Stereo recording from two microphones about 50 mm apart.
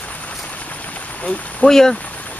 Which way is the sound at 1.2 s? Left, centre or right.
Centre.